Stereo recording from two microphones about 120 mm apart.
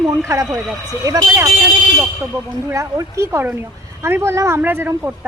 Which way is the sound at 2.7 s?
25° right (ahead or behind).